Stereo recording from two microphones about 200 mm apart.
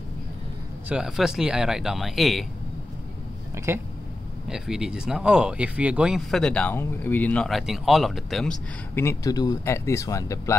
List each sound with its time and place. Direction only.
0.8 s speech: 5° right (ahead or behind)
3.5 s speech: 15° right (ahead or behind)
4.5 s speech: 5° right (ahead or behind)
8.9 s speech: 15° left (ahead or behind)